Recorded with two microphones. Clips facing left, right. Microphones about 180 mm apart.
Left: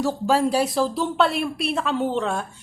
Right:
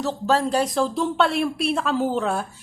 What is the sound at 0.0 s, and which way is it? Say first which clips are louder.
A woman's voice: left 1 dB; 10° left (ahead or behind).